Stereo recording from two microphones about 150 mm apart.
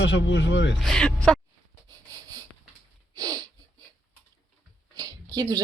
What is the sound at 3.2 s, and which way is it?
Sniff, 25° right (ahead or behind).